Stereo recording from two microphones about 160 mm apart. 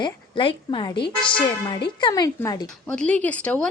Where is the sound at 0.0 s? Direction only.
30° left (ahead or behind).